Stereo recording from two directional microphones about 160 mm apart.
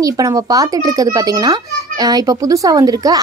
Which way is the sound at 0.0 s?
20° right (ahead or behind).